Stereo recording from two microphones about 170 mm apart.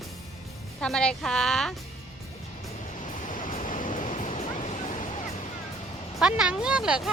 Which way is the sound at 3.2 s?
50° left (ahead or behind).